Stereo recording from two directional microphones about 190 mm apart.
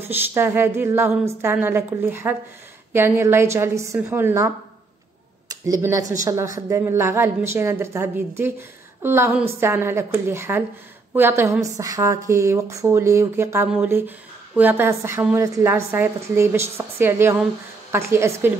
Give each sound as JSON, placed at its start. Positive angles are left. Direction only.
{"t": 0.0, "sound": "a woman's voice", "side_deg": -10}
{"t": 5.5, "sound": "a woman's voice", "side_deg": -15}